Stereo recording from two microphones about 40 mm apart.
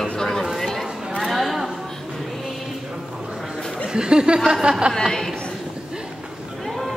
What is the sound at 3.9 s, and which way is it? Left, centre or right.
Speech, right.